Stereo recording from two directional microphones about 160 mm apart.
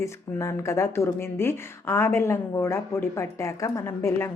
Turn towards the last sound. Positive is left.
turn(degrees=15)  # may be behind; listen again after turning